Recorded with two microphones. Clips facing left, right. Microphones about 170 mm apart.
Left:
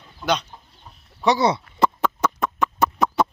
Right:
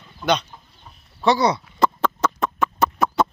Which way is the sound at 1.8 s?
15° left (ahead or behind).